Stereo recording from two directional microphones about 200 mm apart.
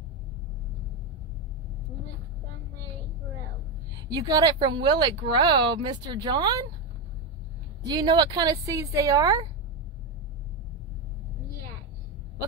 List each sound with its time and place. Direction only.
4.1 s speech: 20° right (ahead or behind)
7.8 s a woman's voice: 20° right (ahead or behind)